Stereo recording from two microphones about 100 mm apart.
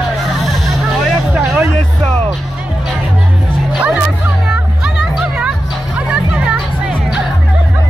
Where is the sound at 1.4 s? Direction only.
25° right (ahead or behind).